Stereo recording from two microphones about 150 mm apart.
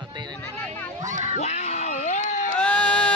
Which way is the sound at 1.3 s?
50° left (ahead or behind).